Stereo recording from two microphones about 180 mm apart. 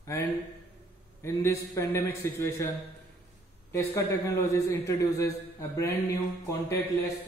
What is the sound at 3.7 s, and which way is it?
A man's voice, 15° left (ahead or behind).